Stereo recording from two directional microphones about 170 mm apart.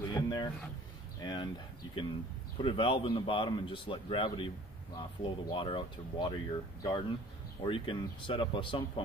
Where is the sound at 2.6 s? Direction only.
30° left (ahead or behind).